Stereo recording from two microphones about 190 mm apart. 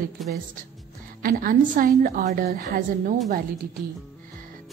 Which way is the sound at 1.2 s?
45° right (ahead or behind).